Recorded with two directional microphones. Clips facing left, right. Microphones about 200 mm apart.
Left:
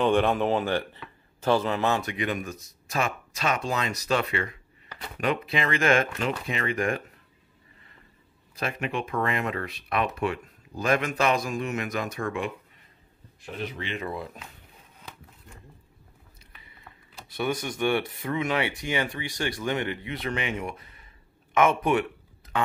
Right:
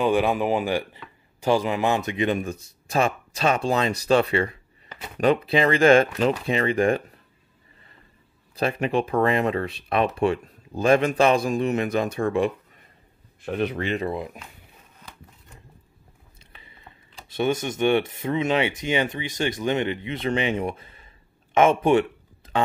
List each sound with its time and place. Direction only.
0.0 s speech: 10° right (ahead or behind); by 7.0 s 30° right (ahead or behind)
8.5 s speech: 35° right (ahead or behind)
13.5 s speech: 60° right (ahead or behind)
14.0 s speech: 15° right (ahead or behind)
16.5 s speech: 25° right (ahead or behind)
22.4 s music: 30° right (ahead or behind)